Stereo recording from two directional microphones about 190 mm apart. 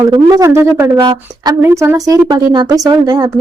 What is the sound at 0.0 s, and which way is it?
Speech, 20° right (ahead or behind).